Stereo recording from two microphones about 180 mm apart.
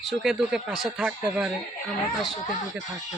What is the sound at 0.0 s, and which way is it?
A man's voice, centre (ahead or behind).